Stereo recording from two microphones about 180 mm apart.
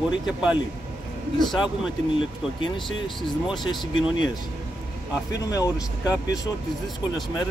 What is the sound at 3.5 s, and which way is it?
Speech, 25° left (ahead or behind).